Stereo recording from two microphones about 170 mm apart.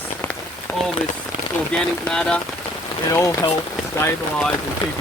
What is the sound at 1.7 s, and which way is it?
Speech, 5° left (ahead or behind).